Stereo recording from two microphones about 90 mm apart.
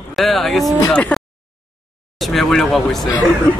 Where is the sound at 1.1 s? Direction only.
15° left (ahead or behind).